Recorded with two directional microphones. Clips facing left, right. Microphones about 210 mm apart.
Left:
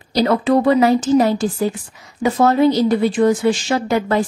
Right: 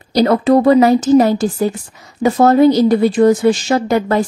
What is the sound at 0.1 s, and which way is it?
Speech, 40° right (ahead or behind).